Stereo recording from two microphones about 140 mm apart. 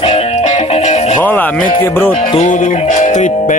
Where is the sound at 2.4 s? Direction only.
65° left (ahead or behind).